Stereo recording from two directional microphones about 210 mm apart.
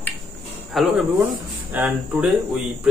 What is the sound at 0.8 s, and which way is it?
Speech, centre (ahead or behind).